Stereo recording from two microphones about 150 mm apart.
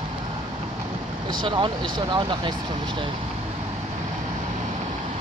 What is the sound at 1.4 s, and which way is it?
Speech, 35° right (ahead or behind).